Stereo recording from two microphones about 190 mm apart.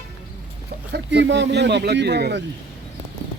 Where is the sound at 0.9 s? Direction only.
65° right (ahead or behind).